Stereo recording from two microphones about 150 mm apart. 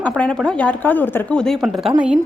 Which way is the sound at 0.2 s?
5° left (ahead or behind).